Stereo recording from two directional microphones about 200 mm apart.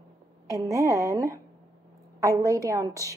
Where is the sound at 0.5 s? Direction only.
15° right (ahead or behind).